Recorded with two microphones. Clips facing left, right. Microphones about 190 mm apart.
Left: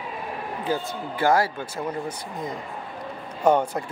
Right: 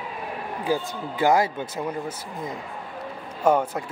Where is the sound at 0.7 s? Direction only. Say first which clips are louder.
Right 2 dB; 15° right (ahead or behind).